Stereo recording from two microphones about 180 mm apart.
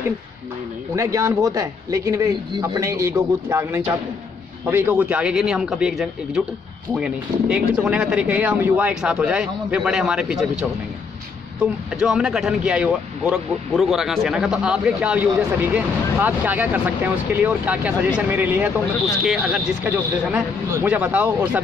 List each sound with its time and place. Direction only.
0.9 s a man's voice: 20° right (ahead or behind)
12.0 s speech: 5° right (ahead or behind)